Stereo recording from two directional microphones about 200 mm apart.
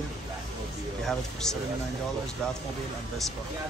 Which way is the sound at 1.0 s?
Centre (ahead or behind).